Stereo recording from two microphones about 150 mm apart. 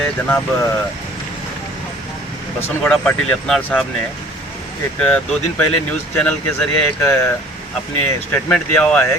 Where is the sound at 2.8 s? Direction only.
5° left (ahead or behind).